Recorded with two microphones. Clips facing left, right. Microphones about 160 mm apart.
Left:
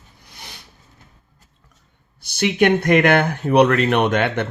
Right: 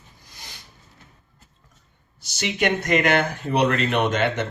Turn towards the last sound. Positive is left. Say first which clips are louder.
# left 3 dB
turn(degrees=60)  # may be behind; listen again after turning